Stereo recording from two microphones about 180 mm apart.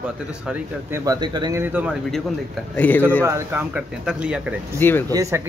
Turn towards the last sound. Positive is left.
turn(degrees=-20)  # may be behind; listen again after turning